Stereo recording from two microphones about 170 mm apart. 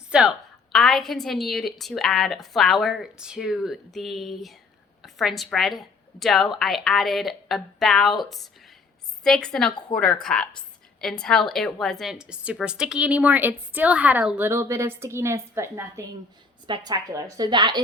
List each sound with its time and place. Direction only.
0.1 s a woman's voice: 5° right (ahead or behind); by 17.8 s 25° right (ahead or behind)